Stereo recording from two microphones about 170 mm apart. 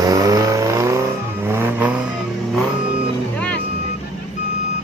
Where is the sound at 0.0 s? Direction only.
20° right (ahead or behind).